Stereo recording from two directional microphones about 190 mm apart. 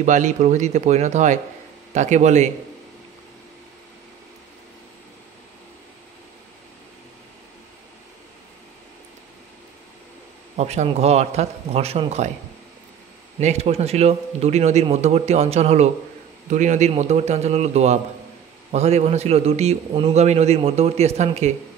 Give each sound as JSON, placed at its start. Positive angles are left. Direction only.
{"t": 0.0, "sound": "a man's voice", "side_deg": -40}
{"t": 10.5, "sound": "a man's voice", "side_deg": -35}
{"t": 13.4, "sound": "a man's voice", "side_deg": -35}